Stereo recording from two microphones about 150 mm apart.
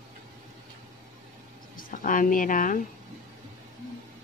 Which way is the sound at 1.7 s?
65° left (ahead or behind).